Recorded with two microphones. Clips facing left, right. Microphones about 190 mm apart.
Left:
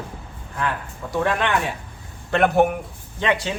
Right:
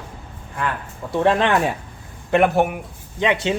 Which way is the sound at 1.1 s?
25° right (ahead or behind).